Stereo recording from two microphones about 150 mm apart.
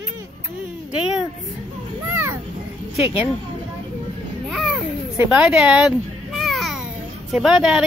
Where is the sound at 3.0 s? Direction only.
15° right (ahead or behind).